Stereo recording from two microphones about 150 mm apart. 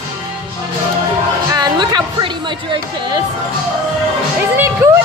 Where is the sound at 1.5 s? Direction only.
25° right (ahead or behind).